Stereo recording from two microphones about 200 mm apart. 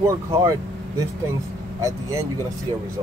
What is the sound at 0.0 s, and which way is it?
Speech, 15° right (ahead or behind).